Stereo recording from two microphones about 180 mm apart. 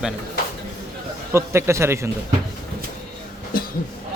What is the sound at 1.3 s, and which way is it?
Speech, 15° right (ahead or behind).